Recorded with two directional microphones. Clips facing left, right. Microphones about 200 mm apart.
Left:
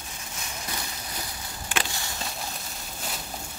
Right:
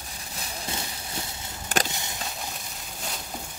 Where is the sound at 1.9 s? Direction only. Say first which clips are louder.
Right 1 dB; 20° right (ahead or behind).